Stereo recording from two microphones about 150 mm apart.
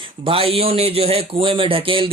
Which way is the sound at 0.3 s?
40° right (ahead or behind).